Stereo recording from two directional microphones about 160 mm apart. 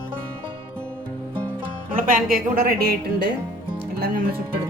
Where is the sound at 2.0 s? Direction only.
60° right (ahead or behind).